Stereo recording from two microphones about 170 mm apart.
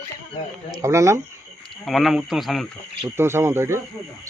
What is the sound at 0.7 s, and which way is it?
Speech, 20° right (ahead or behind).